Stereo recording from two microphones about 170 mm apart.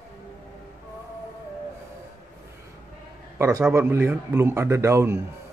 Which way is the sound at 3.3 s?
15° right (ahead or behind).